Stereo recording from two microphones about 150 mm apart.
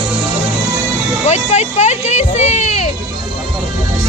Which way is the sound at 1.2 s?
50° left (ahead or behind).